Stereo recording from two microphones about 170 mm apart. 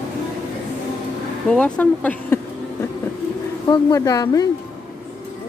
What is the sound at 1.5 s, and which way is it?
Speech, 5° left (ahead or behind).